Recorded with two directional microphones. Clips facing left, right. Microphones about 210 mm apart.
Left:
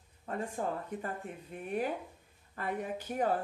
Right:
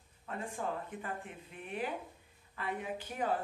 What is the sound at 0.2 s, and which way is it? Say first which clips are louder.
A woman's voice: left 4 dB; 40° left (ahead or behind).